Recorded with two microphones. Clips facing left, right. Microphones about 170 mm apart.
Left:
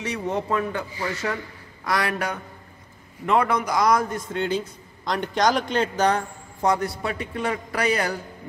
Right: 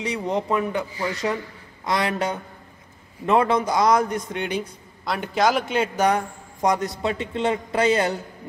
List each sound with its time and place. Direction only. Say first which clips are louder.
0.0 s a man's voice: right 2 dB; 15° right (ahead or behind)